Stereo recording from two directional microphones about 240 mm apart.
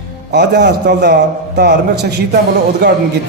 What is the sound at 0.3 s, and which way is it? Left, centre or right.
A man's voice, right.